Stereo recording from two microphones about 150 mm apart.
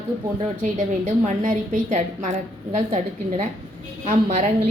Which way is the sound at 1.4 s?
60° right (ahead or behind).